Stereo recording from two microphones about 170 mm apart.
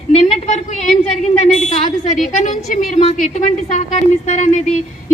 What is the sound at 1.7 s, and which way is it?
A woman's voice, 45° left (ahead or behind).